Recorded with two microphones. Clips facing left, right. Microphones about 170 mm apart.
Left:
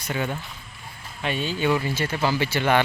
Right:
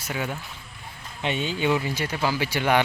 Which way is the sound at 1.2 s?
20° right (ahead or behind).